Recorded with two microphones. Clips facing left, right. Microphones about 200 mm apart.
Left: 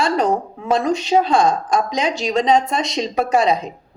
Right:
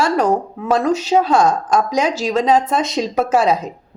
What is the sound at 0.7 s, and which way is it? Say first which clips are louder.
A woman's voice: right 1 dB; 5° right (ahead or behind).